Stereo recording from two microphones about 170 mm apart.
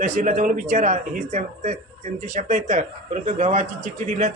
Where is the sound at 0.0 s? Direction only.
45° right (ahead or behind).